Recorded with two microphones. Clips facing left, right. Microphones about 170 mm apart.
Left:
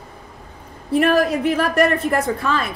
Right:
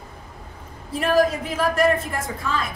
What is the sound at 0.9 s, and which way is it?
A woman's voice, 65° left (ahead or behind).